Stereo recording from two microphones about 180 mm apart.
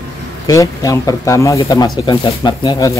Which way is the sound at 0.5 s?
20° left (ahead or behind).